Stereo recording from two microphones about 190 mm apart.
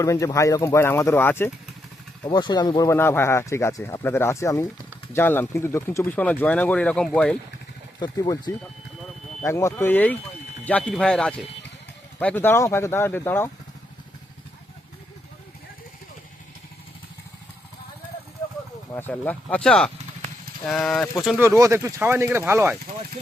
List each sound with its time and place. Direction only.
0.0 s speech: 15° left (ahead or behind)
2.2 s speech: 20° left (ahead or behind); by 7.3 s 5° left (ahead or behind)
7.9 s speech: 20° left (ahead or behind)
18.9 s speech: 10° left (ahead or behind)
21.2 s speech: 10° right (ahead or behind)